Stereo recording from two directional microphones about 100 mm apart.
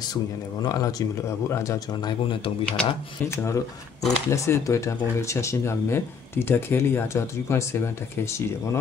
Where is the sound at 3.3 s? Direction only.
25° left (ahead or behind).